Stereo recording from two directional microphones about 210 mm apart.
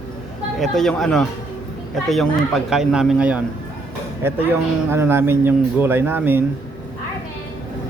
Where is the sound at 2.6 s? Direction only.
Centre (ahead or behind).